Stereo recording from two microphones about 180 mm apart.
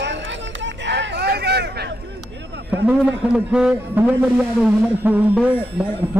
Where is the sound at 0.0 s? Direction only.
80° right; by 2.0 s 65° right (ahead or behind).